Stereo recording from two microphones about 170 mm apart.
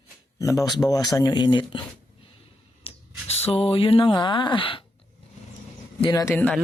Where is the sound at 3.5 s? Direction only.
35° left (ahead or behind).